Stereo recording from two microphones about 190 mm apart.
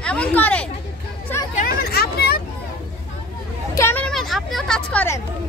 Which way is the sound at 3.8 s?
10° left (ahead or behind).